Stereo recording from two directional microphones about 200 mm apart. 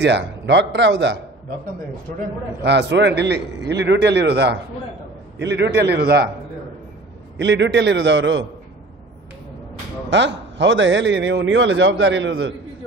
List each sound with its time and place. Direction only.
0.0 s a man's voice: 60° right (ahead or behind)
2.6 s a man's voice: 60° right (ahead or behind)
7.3 s a man's voice: 60° right (ahead or behind)
10.0 s a man's voice: 65° right (ahead or behind)